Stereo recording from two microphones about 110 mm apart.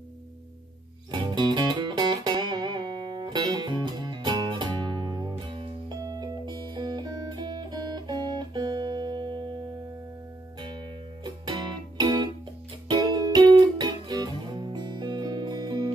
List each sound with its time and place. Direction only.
1.1 s music: 40° right (ahead or behind)
6.0 s music: 35° right (ahead or behind)
11.2 s music: 40° right (ahead or behind)